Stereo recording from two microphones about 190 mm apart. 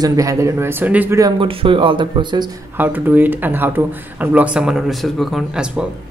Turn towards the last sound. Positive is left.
turn(degrees=0)  # may be behind; listen again after turning